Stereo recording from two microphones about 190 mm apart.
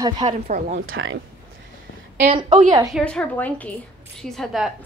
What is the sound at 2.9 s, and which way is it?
A woman's voice, 5° left (ahead or behind).